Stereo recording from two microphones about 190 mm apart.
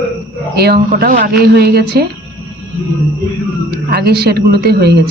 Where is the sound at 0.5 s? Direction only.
55° right (ahead or behind).